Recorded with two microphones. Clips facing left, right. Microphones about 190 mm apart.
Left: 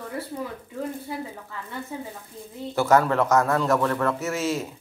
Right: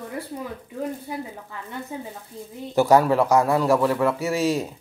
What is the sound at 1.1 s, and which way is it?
Speech, 15° right (ahead or behind).